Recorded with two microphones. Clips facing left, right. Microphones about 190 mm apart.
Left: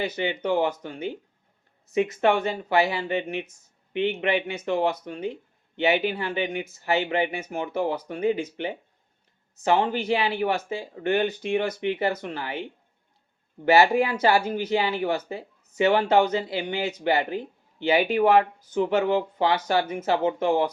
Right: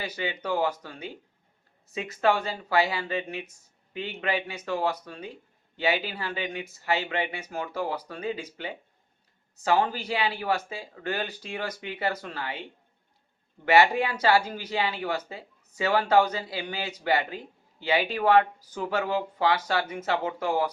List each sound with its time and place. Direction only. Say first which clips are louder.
0.0 s speech: left 6 dB; 25° left (ahead or behind)
13.7 s speech: left 3 dB; 25° left (ahead or behind)